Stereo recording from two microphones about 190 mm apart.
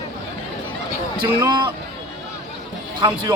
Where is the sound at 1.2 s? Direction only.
20° right (ahead or behind).